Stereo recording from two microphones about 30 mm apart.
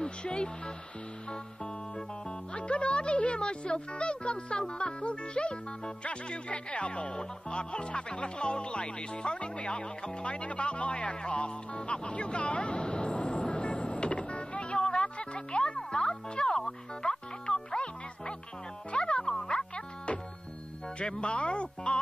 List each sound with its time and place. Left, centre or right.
0.0 s speech: left
6.0 s music: left
21.0 s speech: left